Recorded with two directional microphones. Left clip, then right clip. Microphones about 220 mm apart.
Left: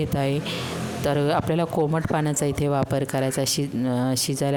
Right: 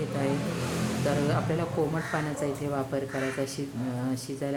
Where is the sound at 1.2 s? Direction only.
45° left (ahead or behind).